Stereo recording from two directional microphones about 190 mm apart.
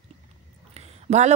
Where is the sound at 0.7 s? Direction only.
35° right (ahead or behind).